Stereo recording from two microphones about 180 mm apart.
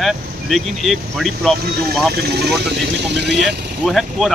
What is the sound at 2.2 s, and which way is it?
Speech, 65° right (ahead or behind).